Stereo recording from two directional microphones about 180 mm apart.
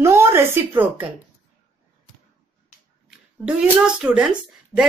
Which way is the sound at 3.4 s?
5° right (ahead or behind).